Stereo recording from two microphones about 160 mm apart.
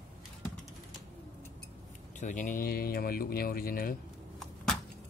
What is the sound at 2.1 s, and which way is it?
Speech, 50° left (ahead or behind).